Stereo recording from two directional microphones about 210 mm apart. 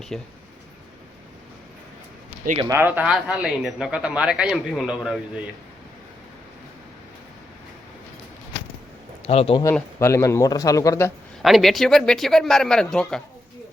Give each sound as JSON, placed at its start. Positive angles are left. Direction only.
{"t": 0.1, "sound": "speech", "side_deg": 5}
{"t": 2.6, "sound": "speech", "side_deg": -15}
{"t": 9.2, "sound": "speech", "side_deg": 30}
{"t": 9.6, "sound": "speech", "side_deg": 15}
{"t": 11.4, "sound": "speech", "side_deg": 0}